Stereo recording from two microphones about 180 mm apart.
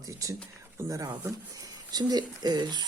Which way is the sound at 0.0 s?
20° right (ahead or behind).